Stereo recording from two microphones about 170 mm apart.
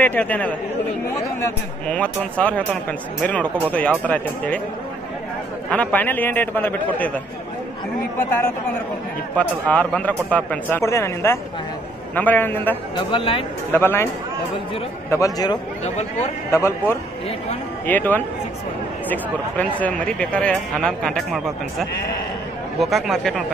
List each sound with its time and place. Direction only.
0.0 s speech: 10° left (ahead or behind)
1.9 s speech: 5° left (ahead or behind)
5.7 s speech: 10° left (ahead or behind)
9.4 s speech: 10° left (ahead or behind)
12.9 s speech: 30° left (ahead or behind)
13.7 s speech: 10° left (ahead or behind)
15.0 s speech: 20° left (ahead or behind)
15.8 s speech: 40° left (ahead or behind)
16.5 s speech: 15° left (ahead or behind)
17.8 s speech: 10° left (ahead or behind)